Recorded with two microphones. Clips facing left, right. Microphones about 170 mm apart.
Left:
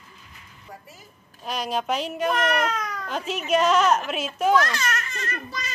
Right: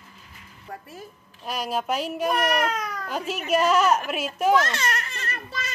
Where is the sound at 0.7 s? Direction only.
60° right (ahead or behind).